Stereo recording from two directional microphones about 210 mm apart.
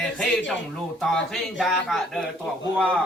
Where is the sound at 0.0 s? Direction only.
5° left (ahead or behind).